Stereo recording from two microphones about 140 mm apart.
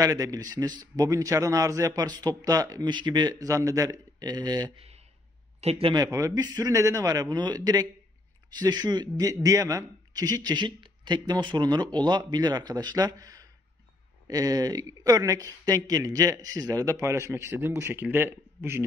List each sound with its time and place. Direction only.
0.0 s a man's voice: 25° right (ahead or behind)
4.7 s a sound: 45° right (ahead or behind)
5.6 s speech: 45° right (ahead or behind)
5.9 s a man's voice: 25° right (ahead or behind)